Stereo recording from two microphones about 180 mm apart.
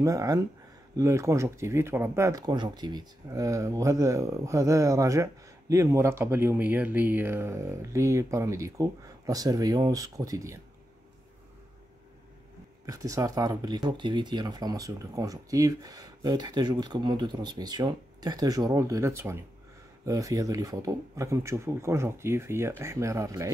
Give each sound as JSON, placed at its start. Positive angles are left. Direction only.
{"t": 0.0, "sound": "speech", "side_deg": -20}
{"t": 12.8, "sound": "speech", "side_deg": -20}